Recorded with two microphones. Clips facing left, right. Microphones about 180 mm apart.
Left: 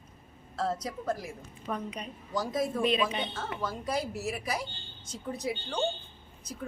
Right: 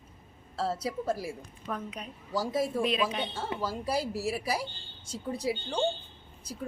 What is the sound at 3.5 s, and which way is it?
Speech, 30° right (ahead or behind).